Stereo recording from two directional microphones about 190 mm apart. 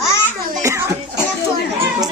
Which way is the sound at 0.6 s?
15° right (ahead or behind).